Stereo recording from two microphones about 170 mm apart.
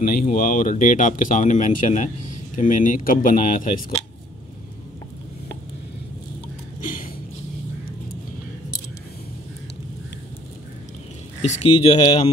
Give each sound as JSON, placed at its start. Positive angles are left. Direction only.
{"t": 0.2, "sound": "speech", "side_deg": 50}
{"t": 6.8, "sound": "a sound", "side_deg": 50}
{"t": 11.4, "sound": "speech", "side_deg": 40}